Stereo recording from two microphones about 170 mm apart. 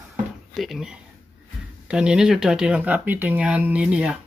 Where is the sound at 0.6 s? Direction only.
Centre (ahead or behind).